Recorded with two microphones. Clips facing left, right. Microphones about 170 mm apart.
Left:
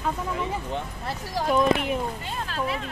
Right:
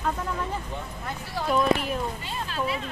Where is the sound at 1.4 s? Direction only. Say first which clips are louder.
Left 1 dB; 15° left (ahead or behind).